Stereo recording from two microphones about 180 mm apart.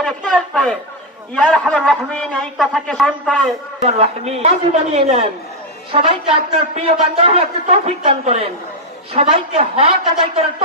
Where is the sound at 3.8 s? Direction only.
35° right (ahead or behind).